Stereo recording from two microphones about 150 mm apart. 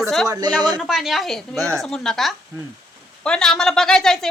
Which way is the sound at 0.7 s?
5° right (ahead or behind).